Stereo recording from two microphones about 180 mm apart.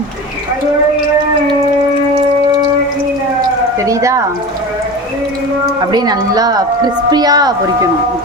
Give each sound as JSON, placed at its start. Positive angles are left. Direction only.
{"t": 3.8, "sound": "speech", "side_deg": -15}
{"t": 5.9, "sound": "a woman's voice", "side_deg": -20}